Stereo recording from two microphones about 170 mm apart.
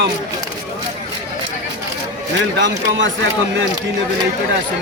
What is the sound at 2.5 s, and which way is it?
Speech, 90° right.